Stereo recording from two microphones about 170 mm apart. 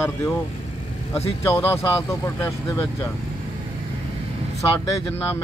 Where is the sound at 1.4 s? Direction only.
15° left (ahead or behind).